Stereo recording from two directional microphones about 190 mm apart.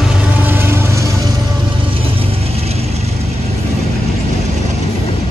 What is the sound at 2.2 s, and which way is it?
Vehicle, 30° right (ahead or behind).